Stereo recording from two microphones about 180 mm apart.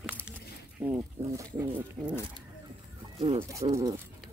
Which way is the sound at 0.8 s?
10° right (ahead or behind).